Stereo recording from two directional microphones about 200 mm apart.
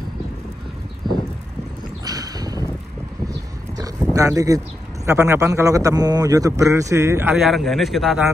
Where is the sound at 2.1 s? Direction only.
20° right (ahead or behind).